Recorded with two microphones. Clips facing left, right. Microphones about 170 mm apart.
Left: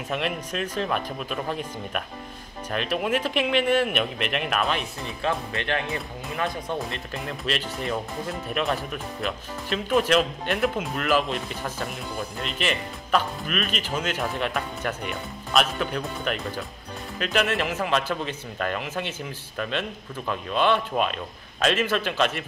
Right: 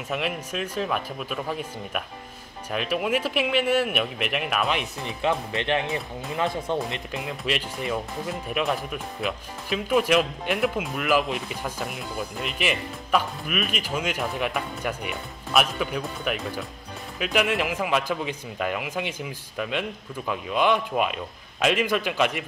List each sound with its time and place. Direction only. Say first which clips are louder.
0.1 s speech: even; 5° right (ahead or behind)
4.7 s speech: right 1 dB; 20° right (ahead or behind)
7.2 s speech: even; 10° right (ahead or behind)